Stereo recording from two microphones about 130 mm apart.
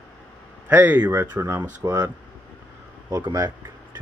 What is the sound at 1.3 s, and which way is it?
Speech, 30° right (ahead or behind).